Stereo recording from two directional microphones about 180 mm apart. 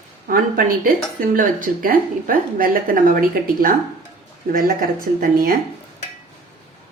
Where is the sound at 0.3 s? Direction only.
55° right (ahead or behind).